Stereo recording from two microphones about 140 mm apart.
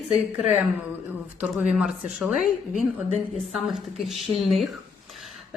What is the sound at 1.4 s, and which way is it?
A man's voice, 5° right (ahead or behind).